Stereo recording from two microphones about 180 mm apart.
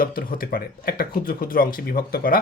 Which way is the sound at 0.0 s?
55° left (ahead or behind).